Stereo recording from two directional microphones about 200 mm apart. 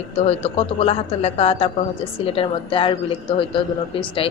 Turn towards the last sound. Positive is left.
turn(degrees=25)  # may be behind; listen again after turning